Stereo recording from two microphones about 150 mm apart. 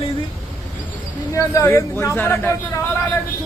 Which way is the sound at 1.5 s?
20° left (ahead or behind).